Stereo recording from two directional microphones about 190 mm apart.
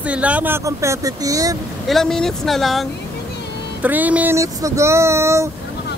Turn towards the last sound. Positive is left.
turn(degrees=-15)  # may be behind; listen again after turning